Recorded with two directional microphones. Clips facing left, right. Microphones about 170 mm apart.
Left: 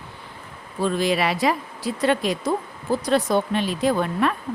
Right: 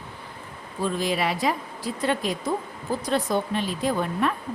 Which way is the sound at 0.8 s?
75° left (ahead or behind).